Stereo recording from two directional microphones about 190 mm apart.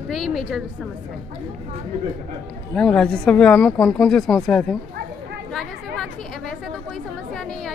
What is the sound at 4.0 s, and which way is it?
Speech, centre (ahead or behind).